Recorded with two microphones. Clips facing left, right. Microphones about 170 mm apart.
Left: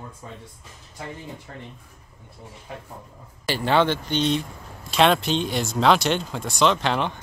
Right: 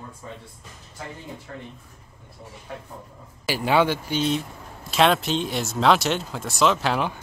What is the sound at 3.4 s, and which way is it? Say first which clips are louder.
Speech: even; 10° right (ahead or behind).